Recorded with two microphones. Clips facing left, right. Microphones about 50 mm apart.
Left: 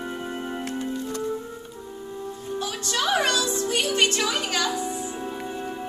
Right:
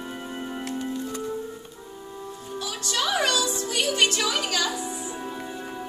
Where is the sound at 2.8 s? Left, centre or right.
Left.